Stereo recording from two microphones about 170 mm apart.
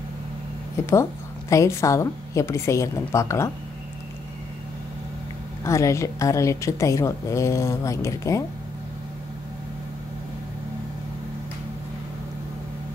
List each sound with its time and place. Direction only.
0.8 s a woman's voice: 15° left (ahead or behind)
5.6 s a woman's voice: 15° left (ahead or behind)